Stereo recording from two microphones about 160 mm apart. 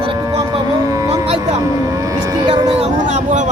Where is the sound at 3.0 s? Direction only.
50° right (ahead or behind).